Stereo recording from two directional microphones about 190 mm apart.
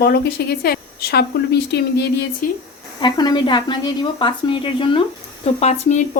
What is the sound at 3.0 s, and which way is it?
A woman's voice, 25° left (ahead or behind).